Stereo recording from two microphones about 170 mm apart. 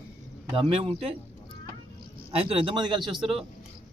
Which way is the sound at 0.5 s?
30° right (ahead or behind).